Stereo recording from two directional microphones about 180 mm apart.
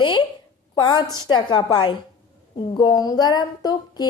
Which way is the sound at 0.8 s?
20° left (ahead or behind).